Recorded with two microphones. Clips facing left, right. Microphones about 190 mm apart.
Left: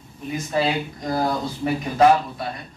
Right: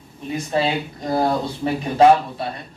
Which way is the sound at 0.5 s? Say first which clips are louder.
Right 1 dB; 30° right (ahead or behind).